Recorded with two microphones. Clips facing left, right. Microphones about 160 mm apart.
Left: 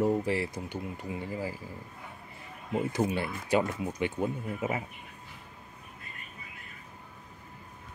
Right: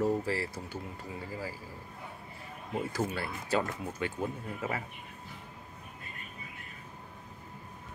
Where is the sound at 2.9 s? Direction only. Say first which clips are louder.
Left 4 dB; 20° left (ahead or behind).